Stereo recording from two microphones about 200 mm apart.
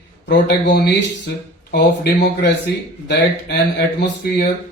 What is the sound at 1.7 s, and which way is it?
Speech, 55° left (ahead or behind).